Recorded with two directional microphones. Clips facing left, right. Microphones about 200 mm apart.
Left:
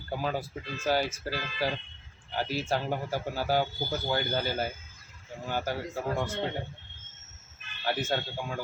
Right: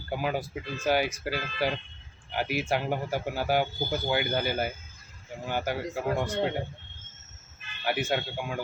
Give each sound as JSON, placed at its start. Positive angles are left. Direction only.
{"t": 0.1, "sound": "speech", "side_deg": -15}
{"t": 7.9, "sound": "speech", "side_deg": -15}